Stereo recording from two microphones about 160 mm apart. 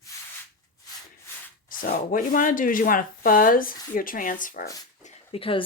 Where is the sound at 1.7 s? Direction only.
60° left (ahead or behind).